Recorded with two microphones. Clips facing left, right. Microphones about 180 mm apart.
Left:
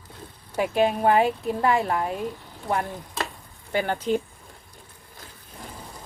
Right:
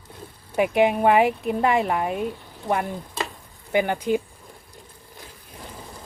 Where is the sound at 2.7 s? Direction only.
15° right (ahead or behind).